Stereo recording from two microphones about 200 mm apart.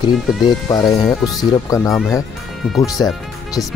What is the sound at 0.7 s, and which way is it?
Speech, 15° left (ahead or behind).